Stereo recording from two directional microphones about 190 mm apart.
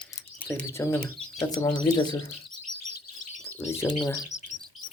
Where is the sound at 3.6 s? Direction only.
15° left (ahead or behind).